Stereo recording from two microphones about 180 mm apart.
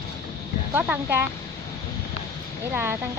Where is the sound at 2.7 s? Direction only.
10° right (ahead or behind).